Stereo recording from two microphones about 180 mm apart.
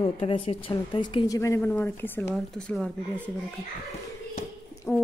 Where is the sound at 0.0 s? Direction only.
30° left (ahead or behind).